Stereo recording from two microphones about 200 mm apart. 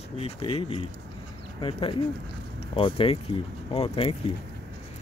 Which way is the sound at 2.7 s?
25° left (ahead or behind).